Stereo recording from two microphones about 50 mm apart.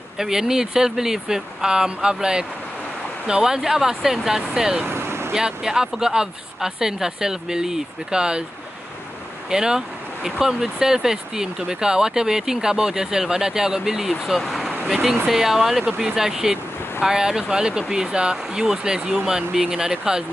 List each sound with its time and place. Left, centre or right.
0.2 s speech: centre
4.8 s vehicle: right
5.3 s speech: centre
9.5 s speech: centre